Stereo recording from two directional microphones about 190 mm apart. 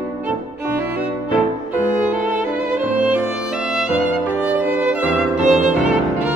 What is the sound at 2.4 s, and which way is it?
Music, 10° right (ahead or behind).